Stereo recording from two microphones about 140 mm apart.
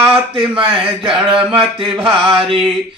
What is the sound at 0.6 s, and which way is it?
Speech, 40° right (ahead or behind).